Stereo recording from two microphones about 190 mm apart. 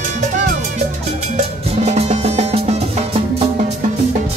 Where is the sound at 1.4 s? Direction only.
35° right (ahead or behind).